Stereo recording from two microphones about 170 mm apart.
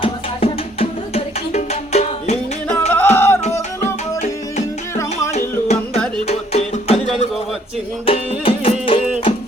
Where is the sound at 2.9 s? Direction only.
10° left (ahead or behind).